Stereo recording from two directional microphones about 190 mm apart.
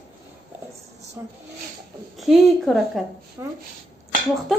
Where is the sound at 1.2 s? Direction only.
15° right (ahead or behind).